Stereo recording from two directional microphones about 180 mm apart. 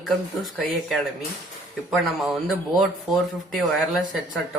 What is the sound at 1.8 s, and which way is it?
Speech, centre (ahead or behind).